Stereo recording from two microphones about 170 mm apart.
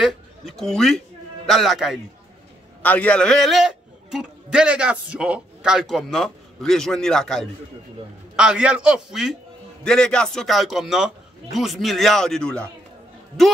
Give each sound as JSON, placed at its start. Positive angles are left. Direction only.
{"t": 0.0, "sound": "a man's voice", "side_deg": 0}
{"t": 2.8, "sound": "a man's voice", "side_deg": 10}